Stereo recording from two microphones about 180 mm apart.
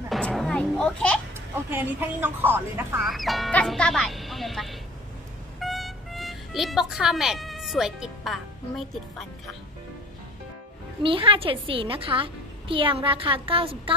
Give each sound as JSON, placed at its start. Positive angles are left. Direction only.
{"t": 0.1, "sound": "music", "side_deg": 0}
{"t": 1.7, "sound": "a woman's voice", "side_deg": -10}
{"t": 3.1, "sound": "speech", "side_deg": 0}
{"t": 5.6, "sound": "music", "side_deg": 0}
{"t": 11.0, "sound": "a woman's voice", "side_deg": -30}